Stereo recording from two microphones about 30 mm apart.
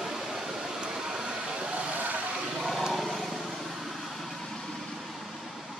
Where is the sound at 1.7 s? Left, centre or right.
Right.